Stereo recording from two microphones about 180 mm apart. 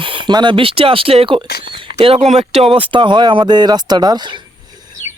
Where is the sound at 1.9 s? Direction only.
30° right (ahead or behind).